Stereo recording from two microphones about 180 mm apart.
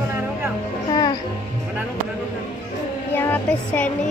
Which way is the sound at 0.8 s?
25° left (ahead or behind).